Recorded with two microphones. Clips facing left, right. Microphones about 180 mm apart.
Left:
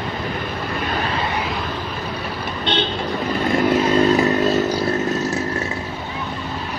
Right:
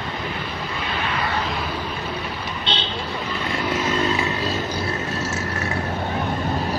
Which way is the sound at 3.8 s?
40° left (ahead or behind).